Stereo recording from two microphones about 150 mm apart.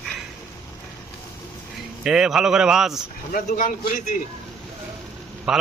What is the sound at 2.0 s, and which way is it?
Speech, 5° right (ahead or behind).